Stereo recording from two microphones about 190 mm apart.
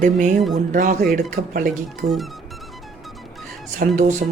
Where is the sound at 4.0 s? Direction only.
40° right (ahead or behind).